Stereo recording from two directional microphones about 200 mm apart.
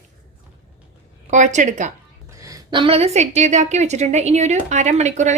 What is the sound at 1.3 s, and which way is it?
Speech, 40° right (ahead or behind).